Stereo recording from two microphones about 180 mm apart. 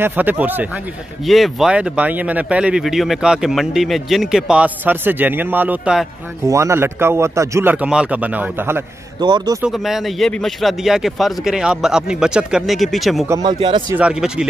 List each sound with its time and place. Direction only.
0.0 s speech: 10° right (ahead or behind)
9.2 s speech: 25° right (ahead or behind)
9.6 s speech: centre (ahead or behind)
13.3 s speech: 25° right (ahead or behind)
13.9 s speech: 5° right (ahead or behind)